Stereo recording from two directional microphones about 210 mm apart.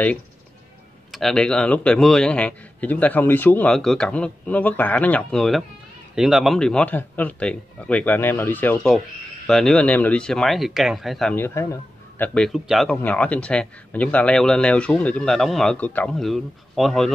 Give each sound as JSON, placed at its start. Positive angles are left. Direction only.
{"t": 1.1, "sound": "speech", "side_deg": 5}